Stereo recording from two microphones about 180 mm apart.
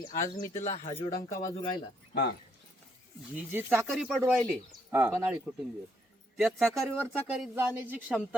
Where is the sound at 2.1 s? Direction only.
60° left (ahead or behind).